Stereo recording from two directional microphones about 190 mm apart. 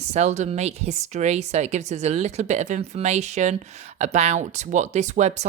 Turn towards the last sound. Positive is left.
turn(degrees=-40)  # may be behind; listen again after turning